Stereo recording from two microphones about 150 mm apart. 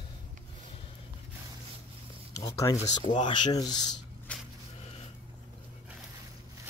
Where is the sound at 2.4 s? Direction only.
25° left (ahead or behind).